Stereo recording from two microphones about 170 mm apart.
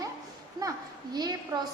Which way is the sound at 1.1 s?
20° right (ahead or behind).